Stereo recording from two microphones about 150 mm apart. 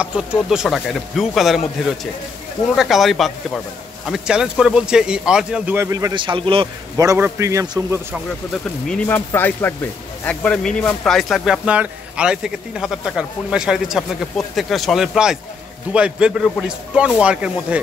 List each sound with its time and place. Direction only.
0.0 s speech: 5° right (ahead or behind)
2.7 s speech: centre (ahead or behind)
5.8 s a man's voice: 20° right (ahead or behind)
7.0 s a man's voice: 25° right (ahead or behind)
8.8 s a man's voice: 10° left (ahead or behind); by 17.7 s 10° right (ahead or behind)